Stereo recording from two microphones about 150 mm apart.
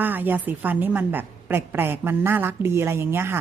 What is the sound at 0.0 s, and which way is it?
A woman's voice, 10° right (ahead or behind).